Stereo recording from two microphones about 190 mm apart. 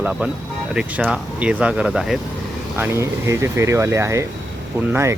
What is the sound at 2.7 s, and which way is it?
Speech, 15° right (ahead or behind).